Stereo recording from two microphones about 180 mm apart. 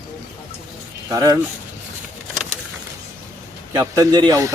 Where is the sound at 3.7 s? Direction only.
20° right (ahead or behind).